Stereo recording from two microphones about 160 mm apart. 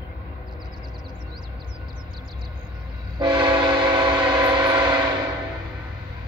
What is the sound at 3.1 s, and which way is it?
Train, 30° right (ahead or behind).